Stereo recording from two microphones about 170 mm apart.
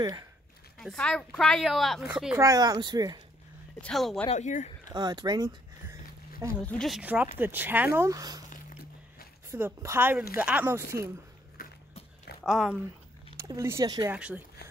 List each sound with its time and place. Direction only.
0.0 s speech: 20° right (ahead or behind)
0.7 s speech: 5° left (ahead or behind)
2.3 s speech: 20° right (ahead or behind)
3.8 s speech: centre (ahead or behind)
4.3 s speech: 45° left (ahead or behind)
4.9 s speech: 25° right (ahead or behind)
6.6 s speech: 5° left (ahead or behind); by 8.5 s 20° right (ahead or behind)
9.5 s speech: 15° right (ahead or behind)
11.6 s a sound: 60° left (ahead or behind)
12.4 s speech: centre (ahead or behind)
13.4 s speech: 15° right (ahead or behind)
14.1 s speech: 5° right (ahead or behind)